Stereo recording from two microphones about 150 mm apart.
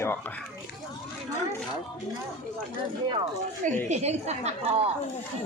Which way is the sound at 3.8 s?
45° right (ahead or behind).